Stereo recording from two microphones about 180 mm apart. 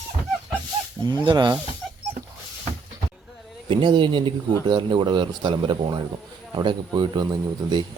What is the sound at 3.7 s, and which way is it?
A man's voice, 25° right (ahead or behind).